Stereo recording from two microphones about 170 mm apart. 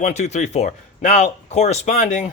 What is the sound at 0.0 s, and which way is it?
Speech, 40° left (ahead or behind).